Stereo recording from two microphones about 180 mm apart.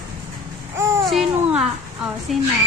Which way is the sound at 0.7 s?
15° right (ahead or behind).